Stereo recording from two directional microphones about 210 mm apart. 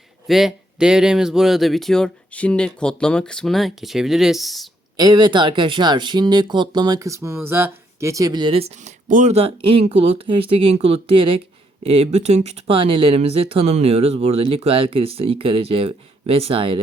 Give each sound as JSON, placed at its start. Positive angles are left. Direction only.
{"t": 0.3, "sound": "speech", "side_deg": 0}
{"t": 4.9, "sound": "speech", "side_deg": -20}